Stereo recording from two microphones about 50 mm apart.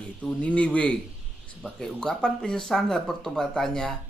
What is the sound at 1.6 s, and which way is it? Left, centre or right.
Speech, centre.